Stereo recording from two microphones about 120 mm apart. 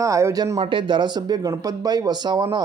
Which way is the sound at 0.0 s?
25° right (ahead or behind).